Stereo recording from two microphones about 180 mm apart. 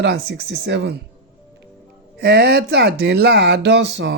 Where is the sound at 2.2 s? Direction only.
70° right (ahead or behind).